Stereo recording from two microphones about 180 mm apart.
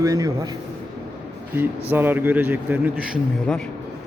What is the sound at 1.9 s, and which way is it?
Speech, 10° right (ahead or behind).